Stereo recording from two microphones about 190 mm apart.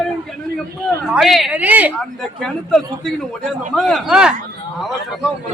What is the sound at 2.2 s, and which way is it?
A man's voice, 5° left (ahead or behind).